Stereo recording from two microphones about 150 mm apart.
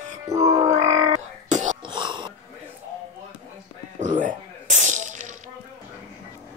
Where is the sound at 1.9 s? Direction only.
30° right (ahead or behind).